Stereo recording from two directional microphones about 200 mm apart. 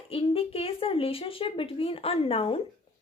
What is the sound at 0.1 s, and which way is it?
A woman's voice, 30° left (ahead or behind).